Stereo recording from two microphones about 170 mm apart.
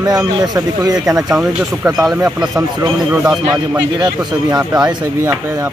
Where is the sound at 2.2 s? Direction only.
10° right (ahead or behind).